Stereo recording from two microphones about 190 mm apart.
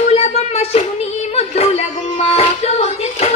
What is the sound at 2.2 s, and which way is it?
Child singing, 35° left (ahead or behind).